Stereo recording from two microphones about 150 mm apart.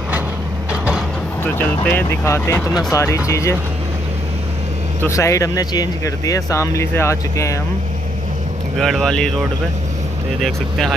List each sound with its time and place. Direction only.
1.4 s speech: 15° left (ahead or behind)
5.0 s speech: 20° left (ahead or behind)
8.7 s speech: centre (ahead or behind)
10.4 s speech: 5° left (ahead or behind)